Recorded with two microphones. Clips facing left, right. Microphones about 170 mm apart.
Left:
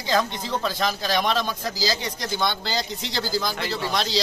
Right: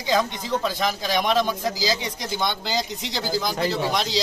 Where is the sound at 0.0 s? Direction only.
15° right (ahead or behind).